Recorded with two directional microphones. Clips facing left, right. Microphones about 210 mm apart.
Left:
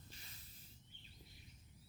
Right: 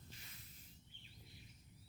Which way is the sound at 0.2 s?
35° left (ahead or behind).